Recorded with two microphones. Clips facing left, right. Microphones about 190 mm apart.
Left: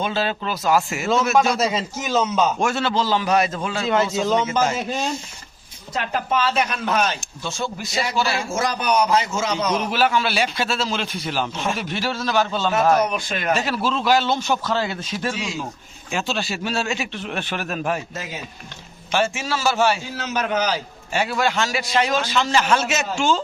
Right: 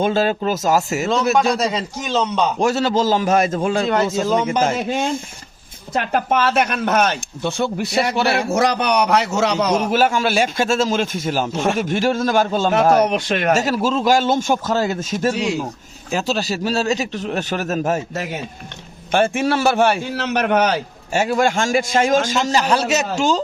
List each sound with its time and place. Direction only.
0.0 s a man's voice: 45° right (ahead or behind)
1.5 s a man's voice: 5° left (ahead or behind)
2.6 s a man's voice: 35° right (ahead or behind)
4.2 s speech: 5° right (ahead or behind)
4.6 s a man's voice: 55° right (ahead or behind); by 9.6 s 70° right (ahead or behind)
9.9 s a man's voice: 45° right (ahead or behind)
13.0 s speech: 70° right (ahead or behind)
13.5 s a man's voice: 45° right (ahead or behind)
19.1 s a man's voice: 55° right (ahead or behind); by 23.4 s 40° right (ahead or behind)